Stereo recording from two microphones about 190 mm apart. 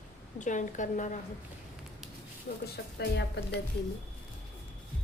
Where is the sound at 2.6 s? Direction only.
60° left (ahead or behind).